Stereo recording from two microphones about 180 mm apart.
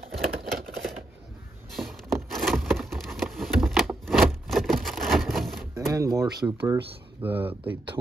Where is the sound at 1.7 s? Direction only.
Centre (ahead or behind).